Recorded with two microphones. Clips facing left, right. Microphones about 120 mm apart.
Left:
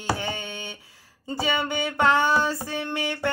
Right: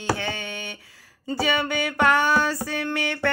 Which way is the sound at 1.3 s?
20° left (ahead or behind).